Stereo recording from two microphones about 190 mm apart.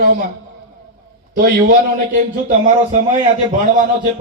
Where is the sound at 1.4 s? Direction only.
50° right (ahead or behind).